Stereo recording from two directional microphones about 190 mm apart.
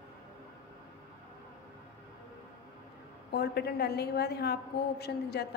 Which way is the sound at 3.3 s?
60° left (ahead or behind).